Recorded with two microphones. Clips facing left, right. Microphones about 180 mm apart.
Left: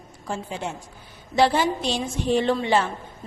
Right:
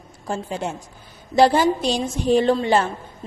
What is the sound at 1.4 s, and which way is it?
A woman's voice, 40° right (ahead or behind).